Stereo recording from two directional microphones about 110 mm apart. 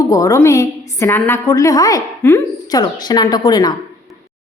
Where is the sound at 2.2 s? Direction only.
20° left (ahead or behind).